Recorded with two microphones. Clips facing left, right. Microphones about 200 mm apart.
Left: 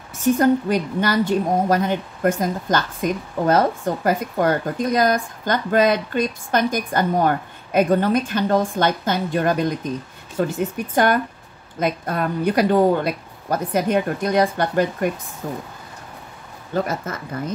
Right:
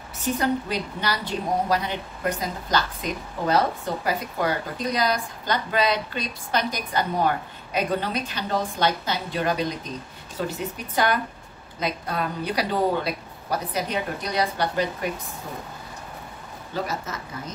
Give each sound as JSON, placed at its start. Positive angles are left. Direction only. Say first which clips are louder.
{"t": 0.1, "sound": "a woman's voice", "louder": "left 8 dB", "side_deg": 50}
{"t": 16.7, "sound": "a woman's voice", "louder": "left 6 dB", "side_deg": 55}